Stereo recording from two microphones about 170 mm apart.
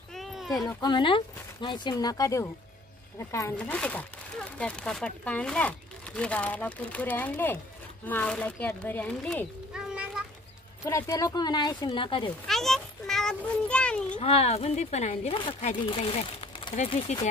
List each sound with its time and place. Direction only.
0.1 s a sound: centre (ahead or behind)
0.7 s a child's voice: 25° left (ahead or behind); by 10.2 s 5° right (ahead or behind)
10.9 s speech: 20° left (ahead or behind)
12.4 s a sound: centre (ahead or behind)
14.1 s speech: 40° left (ahead or behind)
16.7 s speech: 40° left (ahead or behind)